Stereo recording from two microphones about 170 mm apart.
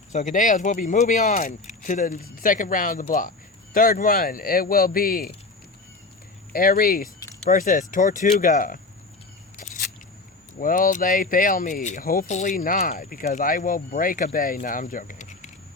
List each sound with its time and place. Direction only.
0.1 s speech: 45° left (ahead or behind)
6.5 s speech: 60° left (ahead or behind)
9.6 s a sound: 45° left (ahead or behind)
10.6 s speech: 55° left (ahead or behind)